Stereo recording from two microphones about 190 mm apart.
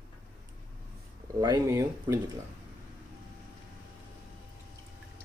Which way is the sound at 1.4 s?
20° right (ahead or behind).